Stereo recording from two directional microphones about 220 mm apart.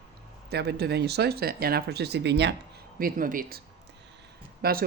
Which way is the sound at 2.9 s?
40° right (ahead or behind).